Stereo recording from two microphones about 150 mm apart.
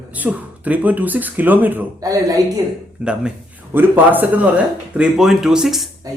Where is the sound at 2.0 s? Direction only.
25° right (ahead or behind).